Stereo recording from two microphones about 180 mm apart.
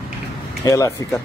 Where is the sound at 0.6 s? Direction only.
20° left (ahead or behind).